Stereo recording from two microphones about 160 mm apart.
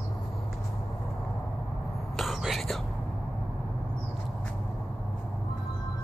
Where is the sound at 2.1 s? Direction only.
Centre (ahead or behind).